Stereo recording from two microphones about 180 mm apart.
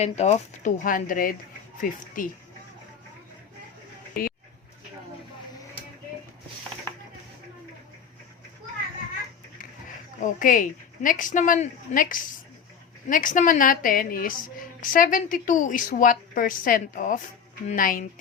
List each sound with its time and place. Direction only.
0.0 s a woman's voice: 35° left (ahead or behind)
4.1 s a sound: 55° left (ahead or behind)
10.2 s a woman's voice: 45° left (ahead or behind)